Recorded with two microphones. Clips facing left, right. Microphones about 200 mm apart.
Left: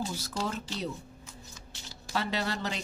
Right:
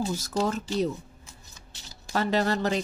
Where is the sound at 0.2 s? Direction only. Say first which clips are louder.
Right 7 dB; 40° right (ahead or behind).